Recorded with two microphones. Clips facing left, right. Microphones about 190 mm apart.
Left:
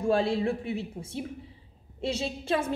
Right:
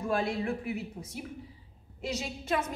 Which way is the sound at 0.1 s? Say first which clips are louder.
Left 5 dB; 30° left (ahead or behind).